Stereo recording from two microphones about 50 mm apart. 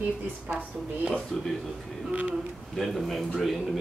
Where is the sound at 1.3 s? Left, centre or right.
Centre.